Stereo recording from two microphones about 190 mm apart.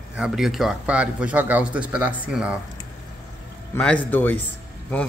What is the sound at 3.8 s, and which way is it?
Speech, 10° left (ahead or behind).